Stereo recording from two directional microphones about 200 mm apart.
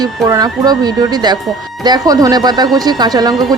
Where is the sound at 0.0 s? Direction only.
20° right (ahead or behind).